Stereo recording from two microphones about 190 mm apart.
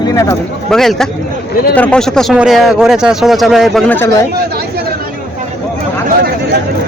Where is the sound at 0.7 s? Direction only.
Centre (ahead or behind).